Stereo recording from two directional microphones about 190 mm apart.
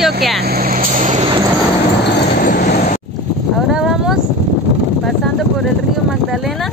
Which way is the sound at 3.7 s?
5° right (ahead or behind).